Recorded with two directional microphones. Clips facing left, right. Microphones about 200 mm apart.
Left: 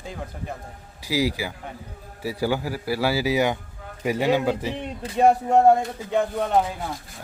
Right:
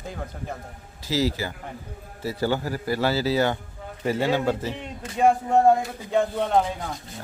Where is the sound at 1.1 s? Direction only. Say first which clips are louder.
Even; 10° left (ahead or behind).